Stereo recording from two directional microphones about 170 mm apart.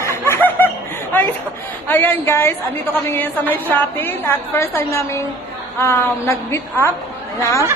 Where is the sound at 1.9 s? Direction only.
10° left (ahead or behind).